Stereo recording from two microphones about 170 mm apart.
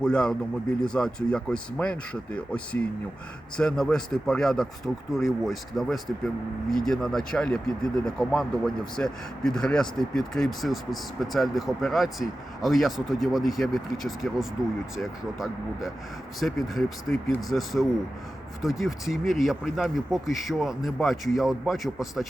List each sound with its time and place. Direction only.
0.0 s speech: 5° left (ahead or behind)